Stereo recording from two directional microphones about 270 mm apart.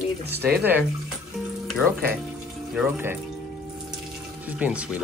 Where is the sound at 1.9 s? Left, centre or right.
Right.